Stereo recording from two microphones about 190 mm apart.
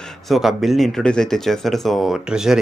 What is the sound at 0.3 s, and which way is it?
Speech, centre (ahead or behind).